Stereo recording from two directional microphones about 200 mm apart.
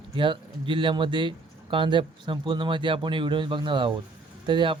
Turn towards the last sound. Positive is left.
turn(degrees=-25)  # may be behind; listen again after turning